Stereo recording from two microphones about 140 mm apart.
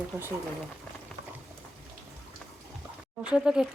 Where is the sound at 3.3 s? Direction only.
5° right (ahead or behind).